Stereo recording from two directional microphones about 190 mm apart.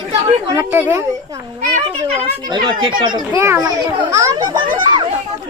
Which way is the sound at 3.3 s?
15° right (ahead or behind).